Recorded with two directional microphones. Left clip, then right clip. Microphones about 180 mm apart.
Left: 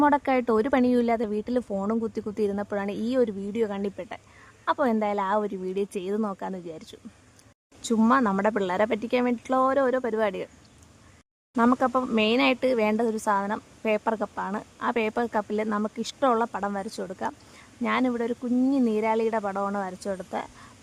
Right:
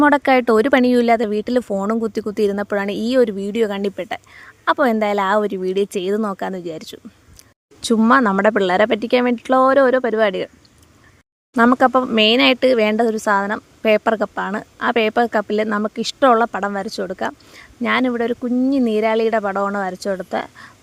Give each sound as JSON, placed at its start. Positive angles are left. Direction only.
{"t": 0.0, "sound": "speech", "side_deg": -25}
{"t": 11.5, "sound": "speech", "side_deg": -30}